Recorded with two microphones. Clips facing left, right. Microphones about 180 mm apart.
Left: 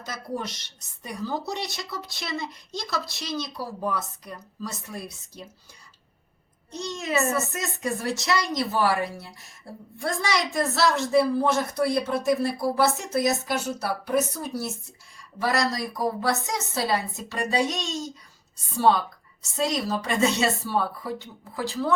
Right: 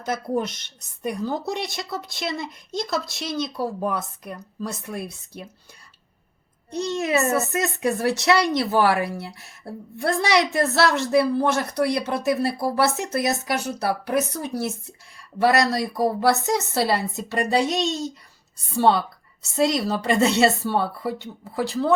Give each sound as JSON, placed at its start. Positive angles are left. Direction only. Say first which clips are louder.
{"t": 0.0, "sound": "speech", "louder": "right 7 dB", "side_deg": -55}
{"t": 6.7, "sound": "a woman's voice", "louder": "right 7 dB", "side_deg": -60}
{"t": 15.4, "sound": "a woman's voice", "louder": "right 6 dB", "side_deg": -65}